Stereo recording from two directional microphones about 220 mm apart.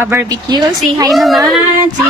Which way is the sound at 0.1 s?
15° right (ahead or behind).